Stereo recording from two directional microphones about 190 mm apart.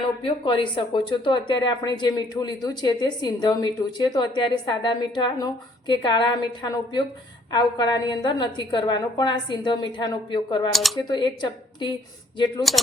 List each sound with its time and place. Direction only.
0.2 s speech: 25° left (ahead or behind)
10.7 s speech: centre (ahead or behind)
11.1 s speech: 25° left (ahead or behind)
12.7 s speech: centre (ahead or behind)